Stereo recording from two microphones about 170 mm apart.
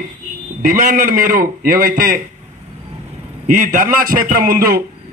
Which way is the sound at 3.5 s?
50° right (ahead or behind).